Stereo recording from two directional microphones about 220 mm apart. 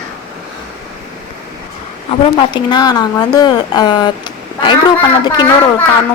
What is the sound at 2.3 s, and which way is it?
Speech, 20° left (ahead or behind).